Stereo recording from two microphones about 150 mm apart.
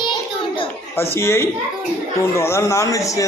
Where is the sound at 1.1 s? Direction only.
15° left (ahead or behind).